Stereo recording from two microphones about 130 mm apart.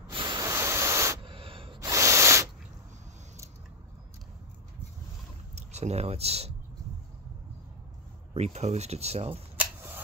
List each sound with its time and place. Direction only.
0.1 s ocean: 35° right (ahead or behind)
0.5 s waves: 20° right (ahead or behind)
1.2 s gasp: 45° right (ahead or behind)
1.8 s spray: 25° right (ahead or behind)
5.6 s speech: 60° right (ahead or behind)
8.3 s speech: 55° right (ahead or behind)
9.6 s a sound: 15° right (ahead or behind)